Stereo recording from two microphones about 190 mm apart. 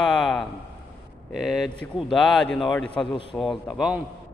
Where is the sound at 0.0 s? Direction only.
Centre (ahead or behind).